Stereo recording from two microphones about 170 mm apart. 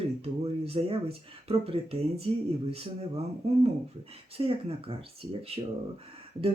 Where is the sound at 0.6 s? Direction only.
35° right (ahead or behind).